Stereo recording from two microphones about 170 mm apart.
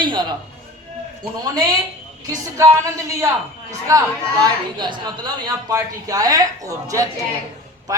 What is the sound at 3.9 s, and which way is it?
Speech, 20° right (ahead or behind).